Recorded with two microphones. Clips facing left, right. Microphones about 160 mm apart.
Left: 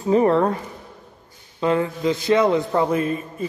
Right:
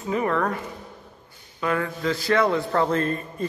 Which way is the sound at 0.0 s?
30° left (ahead or behind).